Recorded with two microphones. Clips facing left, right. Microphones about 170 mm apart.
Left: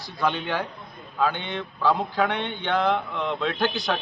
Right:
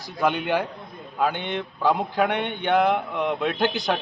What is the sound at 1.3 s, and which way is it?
Speech, 15° right (ahead or behind).